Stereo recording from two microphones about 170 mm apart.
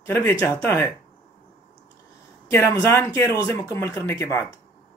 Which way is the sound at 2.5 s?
15° left (ahead or behind).